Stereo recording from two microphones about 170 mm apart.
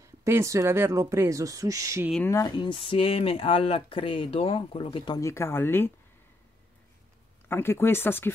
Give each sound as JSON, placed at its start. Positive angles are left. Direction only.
{"t": 0.2, "sound": "speech", "side_deg": -15}
{"t": 2.2, "sound": "speech", "side_deg": 20}
{"t": 5.2, "sound": "speech", "side_deg": 15}
{"t": 7.4, "sound": "speech", "side_deg": 15}